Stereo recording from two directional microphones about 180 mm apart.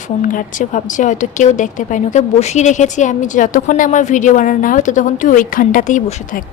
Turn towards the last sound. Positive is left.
turn(degrees=45)  # may be behind; listen again after turning